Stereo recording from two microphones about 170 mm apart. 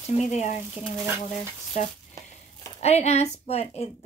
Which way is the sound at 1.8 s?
45° left (ahead or behind).